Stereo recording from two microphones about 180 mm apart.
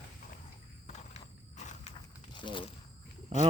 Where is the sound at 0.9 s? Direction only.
40° left (ahead or behind).